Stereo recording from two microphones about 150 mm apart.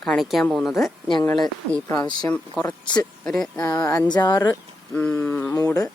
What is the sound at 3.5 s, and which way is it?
Speech, 20° left (ahead or behind).